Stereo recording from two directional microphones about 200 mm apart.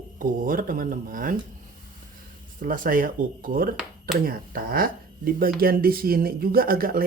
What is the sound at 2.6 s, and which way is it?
Speech, 45° right (ahead or behind).